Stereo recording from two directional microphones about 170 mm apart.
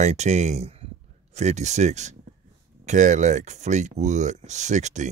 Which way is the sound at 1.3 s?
40° right (ahead or behind).